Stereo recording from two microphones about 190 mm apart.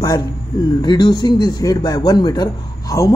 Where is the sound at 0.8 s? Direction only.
20° left (ahead or behind).